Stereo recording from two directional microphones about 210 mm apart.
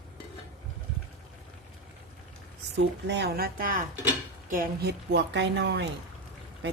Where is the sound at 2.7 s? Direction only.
55° right (ahead or behind).